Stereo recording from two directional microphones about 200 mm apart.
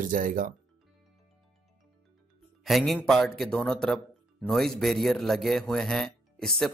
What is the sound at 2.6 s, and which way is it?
Speech, centre (ahead or behind).